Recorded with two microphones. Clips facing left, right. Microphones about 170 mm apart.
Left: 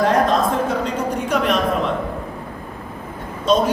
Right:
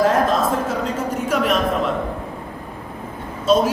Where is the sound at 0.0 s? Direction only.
5° right (ahead or behind).